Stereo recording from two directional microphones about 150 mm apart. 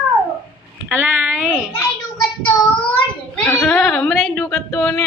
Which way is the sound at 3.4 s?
10° left (ahead or behind).